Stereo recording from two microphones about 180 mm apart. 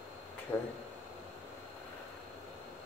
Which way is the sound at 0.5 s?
10° left (ahead or behind).